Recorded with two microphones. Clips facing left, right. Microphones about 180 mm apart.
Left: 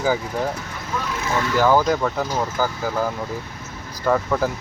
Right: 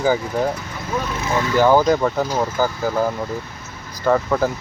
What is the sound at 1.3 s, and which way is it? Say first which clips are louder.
Speech: right 3 dB; 15° right (ahead or behind).